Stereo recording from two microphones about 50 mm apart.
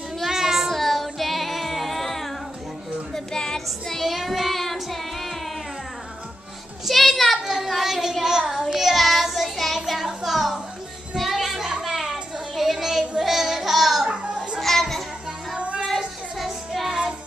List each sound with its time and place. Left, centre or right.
0.2 s child singing: centre
3.3 s child singing: centre
4.0 s child singing: centre
6.9 s a sound: centre
8.6 s child singing: centre
11.1 s a sound: centre
13.2 s music: centre
14.0 s children playing: right
14.6 s a sound: centre
15.5 s child singing: right
16.3 s music: centre